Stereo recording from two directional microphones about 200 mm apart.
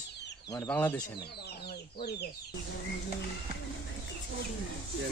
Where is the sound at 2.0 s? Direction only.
55° left (ahead or behind).